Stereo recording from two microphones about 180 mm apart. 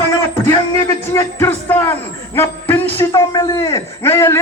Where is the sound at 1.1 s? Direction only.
15° left (ahead or behind).